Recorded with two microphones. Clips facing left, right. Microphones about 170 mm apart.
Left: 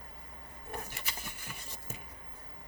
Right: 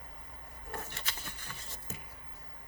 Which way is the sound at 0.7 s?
10° left (ahead or behind).